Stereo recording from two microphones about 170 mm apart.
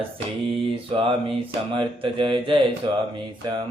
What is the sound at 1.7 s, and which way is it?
Speech, 30° right (ahead or behind).